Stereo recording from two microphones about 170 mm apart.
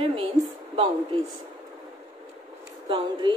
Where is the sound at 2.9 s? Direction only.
30° right (ahead or behind).